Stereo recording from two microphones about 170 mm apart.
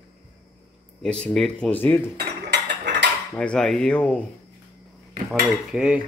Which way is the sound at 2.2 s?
90° right.